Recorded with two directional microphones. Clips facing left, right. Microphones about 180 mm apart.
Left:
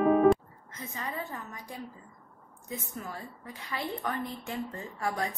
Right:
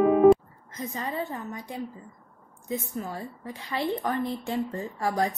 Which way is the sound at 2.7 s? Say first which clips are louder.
Right 7 dB; 30° right (ahead or behind).